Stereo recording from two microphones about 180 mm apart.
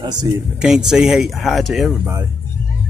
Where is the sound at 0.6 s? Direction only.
5° right (ahead or behind).